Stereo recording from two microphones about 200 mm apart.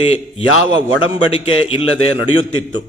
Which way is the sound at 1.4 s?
30° left (ahead or behind).